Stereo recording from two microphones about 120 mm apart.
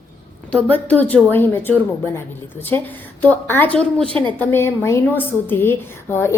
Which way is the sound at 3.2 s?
15° left (ahead or behind).